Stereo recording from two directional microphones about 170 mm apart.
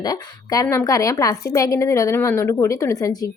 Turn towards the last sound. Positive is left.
turn(degrees=20)  # may be behind; listen again after turning